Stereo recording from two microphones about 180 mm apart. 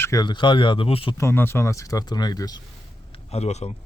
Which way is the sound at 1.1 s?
15° left (ahead or behind).